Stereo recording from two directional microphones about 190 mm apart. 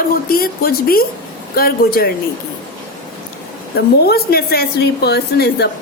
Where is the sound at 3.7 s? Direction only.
55° left (ahead or behind).